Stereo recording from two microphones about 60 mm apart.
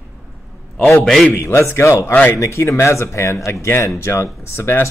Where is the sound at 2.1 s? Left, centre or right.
Left.